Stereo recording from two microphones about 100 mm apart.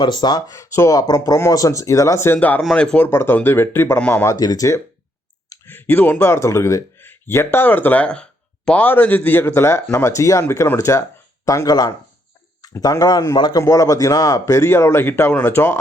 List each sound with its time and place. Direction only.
0.0 s speech: 50° left (ahead or behind); by 2.6 s 20° left (ahead or behind)
2.6 s speech: 5° left (ahead or behind)
3.1 s speech: 25° left (ahead or behind)
4.4 s speech: 40° left (ahead or behind)
5.6 s speech: 20° left (ahead or behind); by 13.6 s 45° left (ahead or behind)
13.6 s speech: 30° left (ahead or behind)